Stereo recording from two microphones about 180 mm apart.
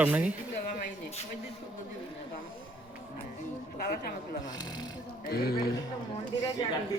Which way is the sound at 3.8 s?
55° left (ahead or behind).